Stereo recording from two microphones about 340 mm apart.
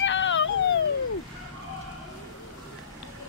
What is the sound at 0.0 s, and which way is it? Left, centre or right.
Baby cry, left.